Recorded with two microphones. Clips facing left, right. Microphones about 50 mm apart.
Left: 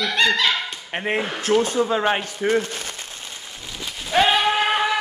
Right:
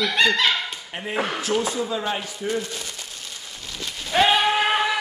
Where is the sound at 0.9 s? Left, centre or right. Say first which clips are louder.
Left 3 dB; left.